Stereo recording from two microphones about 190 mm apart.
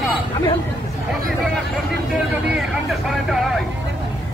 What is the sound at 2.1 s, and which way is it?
Speech, centre (ahead or behind).